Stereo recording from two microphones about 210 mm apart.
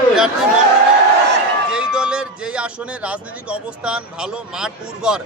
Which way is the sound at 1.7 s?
5° right (ahead or behind).